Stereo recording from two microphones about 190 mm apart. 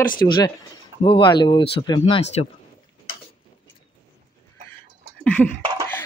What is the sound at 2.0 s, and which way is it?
Speech, 35° left (ahead or behind).